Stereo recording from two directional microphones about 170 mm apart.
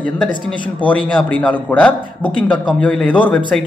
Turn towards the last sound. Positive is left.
turn(degrees=5)  # may be behind; listen again after turning